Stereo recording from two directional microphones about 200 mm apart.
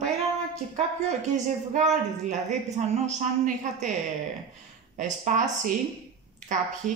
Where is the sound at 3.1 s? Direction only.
40° right (ahead or behind).